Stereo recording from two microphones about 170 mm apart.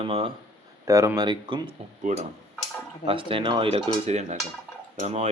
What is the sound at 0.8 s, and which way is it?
Speech, 15° right (ahead or behind).